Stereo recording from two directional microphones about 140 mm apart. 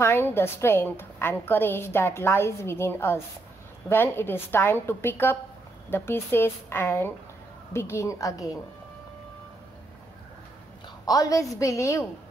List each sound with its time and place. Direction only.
0.0 s a woman's voice: 15° left (ahead or behind)
11.1 s a woman's voice: 25° left (ahead or behind)